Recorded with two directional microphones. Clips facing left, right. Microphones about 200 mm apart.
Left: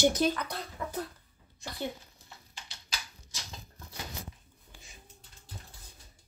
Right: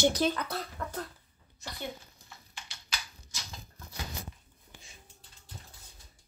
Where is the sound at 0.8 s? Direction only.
5° left (ahead or behind).